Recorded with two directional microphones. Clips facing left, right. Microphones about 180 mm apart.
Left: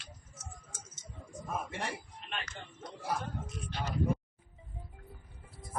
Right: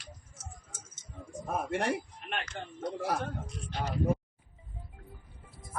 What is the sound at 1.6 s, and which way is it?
Speech, 65° right (ahead or behind).